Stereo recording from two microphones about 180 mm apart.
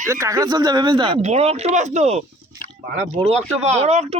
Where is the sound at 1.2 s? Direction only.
35° right (ahead or behind).